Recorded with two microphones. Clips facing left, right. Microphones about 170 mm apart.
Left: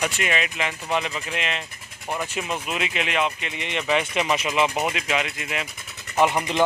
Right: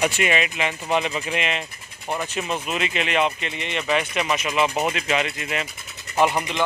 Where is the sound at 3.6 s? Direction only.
15° left (ahead or behind).